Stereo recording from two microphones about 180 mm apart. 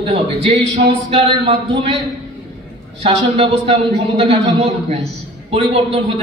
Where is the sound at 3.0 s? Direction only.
35° right (ahead or behind).